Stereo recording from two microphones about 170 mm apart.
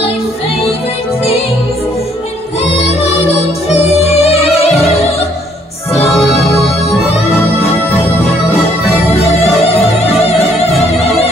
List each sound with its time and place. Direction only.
3.0 s music: 40° left (ahead or behind)
8.8 s music: 35° left (ahead or behind)